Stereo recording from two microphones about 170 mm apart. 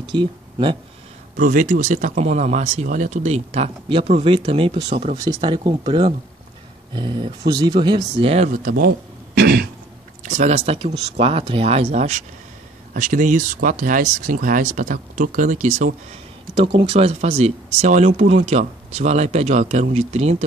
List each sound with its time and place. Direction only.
0.1 s speech: 30° right (ahead or behind)
1.3 s speech: 50° right (ahead or behind); by 8.0 s 30° right (ahead or behind)
8.2 s speech: 40° right (ahead or behind); by 9.7 s 65° right (ahead or behind)
10.2 s speech: 45° right (ahead or behind)
16.9 s speech: 35° right (ahead or behind)